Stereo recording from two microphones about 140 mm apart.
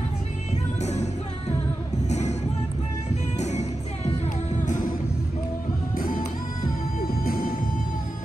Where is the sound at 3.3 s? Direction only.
55° left (ahead or behind).